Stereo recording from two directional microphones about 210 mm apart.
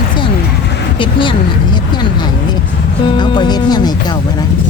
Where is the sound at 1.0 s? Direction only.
25° left (ahead or behind).